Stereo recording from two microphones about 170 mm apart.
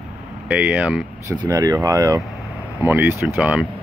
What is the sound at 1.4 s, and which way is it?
Speech, 20° right (ahead or behind).